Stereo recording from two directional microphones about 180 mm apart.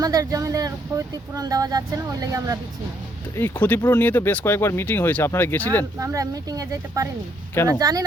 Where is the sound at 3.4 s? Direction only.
10° left (ahead or behind).